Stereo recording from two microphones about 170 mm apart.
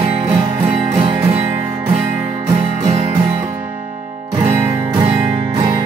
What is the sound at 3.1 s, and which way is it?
Music, 15° right (ahead or behind).